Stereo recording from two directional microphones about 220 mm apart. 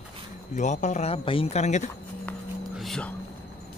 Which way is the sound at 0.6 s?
35° left (ahead or behind).